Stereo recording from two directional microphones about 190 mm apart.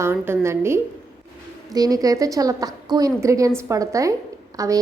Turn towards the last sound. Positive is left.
turn(degrees=-20)  # may be behind; listen again after turning